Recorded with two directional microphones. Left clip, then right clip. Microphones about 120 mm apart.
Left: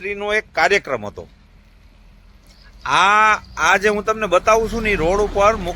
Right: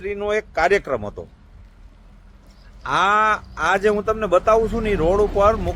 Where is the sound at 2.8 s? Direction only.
10° left (ahead or behind).